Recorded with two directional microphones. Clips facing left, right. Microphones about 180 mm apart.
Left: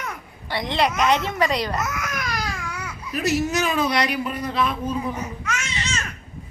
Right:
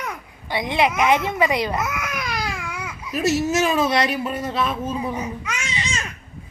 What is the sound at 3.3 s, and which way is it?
A woman's voice, 25° right (ahead or behind).